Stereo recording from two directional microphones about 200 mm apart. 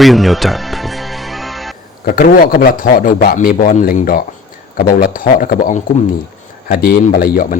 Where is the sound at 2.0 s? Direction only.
50° left (ahead or behind).